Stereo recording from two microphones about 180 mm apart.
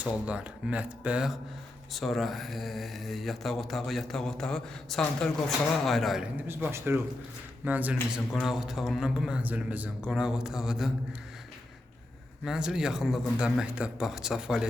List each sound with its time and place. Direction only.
0.0 s speech: 5° right (ahead or behind)
6.5 s speech: 15° right (ahead or behind)
12.5 s speech: 5° right (ahead or behind)